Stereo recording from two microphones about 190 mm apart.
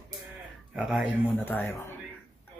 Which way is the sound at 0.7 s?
5° right (ahead or behind).